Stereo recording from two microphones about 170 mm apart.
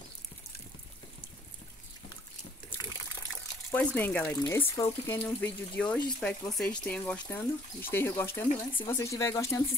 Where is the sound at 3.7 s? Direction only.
10° left (ahead or behind).